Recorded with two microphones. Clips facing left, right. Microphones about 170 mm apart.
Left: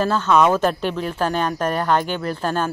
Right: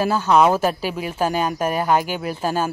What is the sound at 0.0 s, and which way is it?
Speech, 10° right (ahead or behind).